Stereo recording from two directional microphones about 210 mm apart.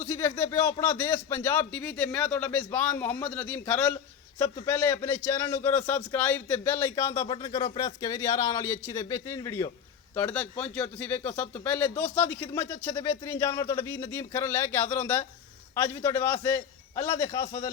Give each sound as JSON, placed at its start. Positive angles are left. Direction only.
{"t": 0.0, "sound": "a man's voice", "side_deg": 10}
{"t": 17.2, "sound": "a man's voice", "side_deg": 25}